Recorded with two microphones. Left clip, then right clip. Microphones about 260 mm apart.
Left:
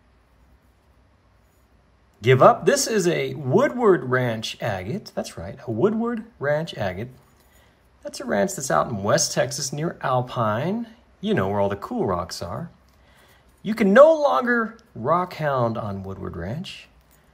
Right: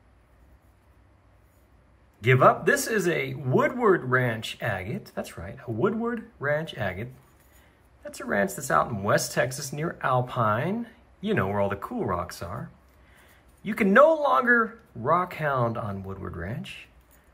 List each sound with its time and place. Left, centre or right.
2.2 s speech: centre
13.7 s speech: centre